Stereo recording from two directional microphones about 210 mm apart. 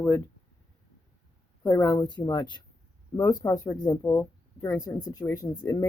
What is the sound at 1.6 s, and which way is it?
A woman's voice, 15° left (ahead or behind).